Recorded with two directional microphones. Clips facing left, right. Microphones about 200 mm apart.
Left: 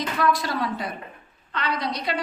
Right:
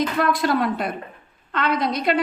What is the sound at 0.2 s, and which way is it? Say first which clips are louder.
A woman's voice: right 1 dB; 55° right (ahead or behind).